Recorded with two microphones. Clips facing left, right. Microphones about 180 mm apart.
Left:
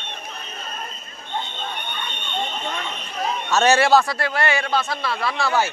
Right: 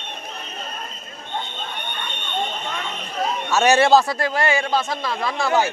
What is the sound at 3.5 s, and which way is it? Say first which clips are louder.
Speech: even; 10° right (ahead or behind).